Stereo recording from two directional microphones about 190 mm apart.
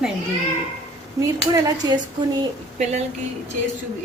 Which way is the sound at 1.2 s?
20° right (ahead or behind).